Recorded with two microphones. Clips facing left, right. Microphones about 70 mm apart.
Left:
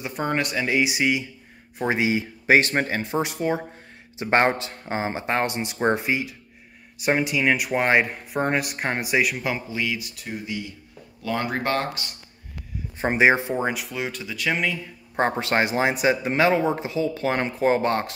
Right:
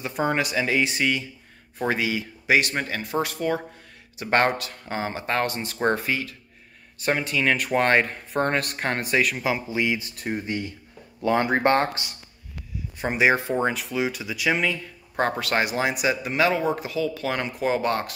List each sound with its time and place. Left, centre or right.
0.0 s speech: centre
1.9 s speech: left
3.0 s speech: left
9.7 s speech: right
11.2 s speech: right
12.9 s speech: left
13.6 s speech: centre
15.1 s speech: left